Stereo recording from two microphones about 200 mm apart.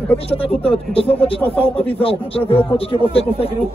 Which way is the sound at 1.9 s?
30° left (ahead or behind).